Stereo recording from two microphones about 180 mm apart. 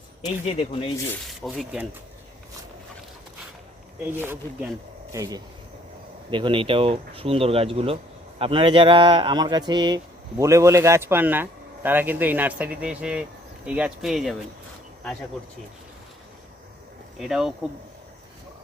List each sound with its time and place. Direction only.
0.4 s speech: 35° left (ahead or behind)
1.3 s speech: centre (ahead or behind)
4.0 s speech: 10° right (ahead or behind)
17.2 s speech: centre (ahead or behind)